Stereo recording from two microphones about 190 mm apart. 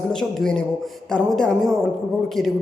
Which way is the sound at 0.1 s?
5° left (ahead or behind).